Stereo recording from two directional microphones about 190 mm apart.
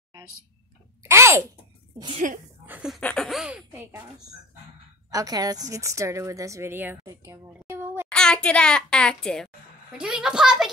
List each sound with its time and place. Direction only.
1.0 s speech: 15° right (ahead or behind)
2.0 s a woman's voice: 25° right (ahead or behind)
2.6 s speech: 5° right (ahead or behind)
5.1 s a woman's voice: 20° right (ahead or behind)
8.1 s speech: 5° left (ahead or behind)